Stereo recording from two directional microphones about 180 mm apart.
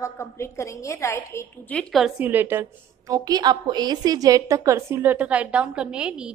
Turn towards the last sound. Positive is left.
turn(degrees=-5)  # may be behind; listen again after turning